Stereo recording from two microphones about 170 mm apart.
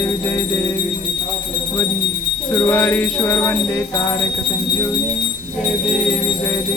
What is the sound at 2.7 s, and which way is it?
Jingle bell, 10° left (ahead or behind).